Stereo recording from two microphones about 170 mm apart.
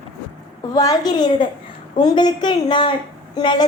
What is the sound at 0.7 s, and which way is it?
A woman's voice, 20° left (ahead or behind).